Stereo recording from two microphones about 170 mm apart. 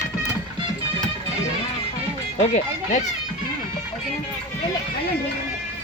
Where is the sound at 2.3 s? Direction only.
45° left (ahead or behind).